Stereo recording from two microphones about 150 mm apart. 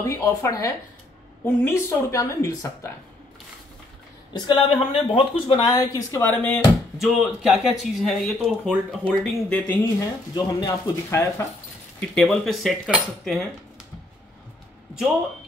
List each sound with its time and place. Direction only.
0.0 s speech: 20° left (ahead or behind)
4.3 s speech: 35° left (ahead or behind); by 6.6 s 10° left (ahead or behind)
7.0 s speech: centre (ahead or behind)
9.9 s speech: 25° left (ahead or behind)
12.2 s speech: centre (ahead or behind)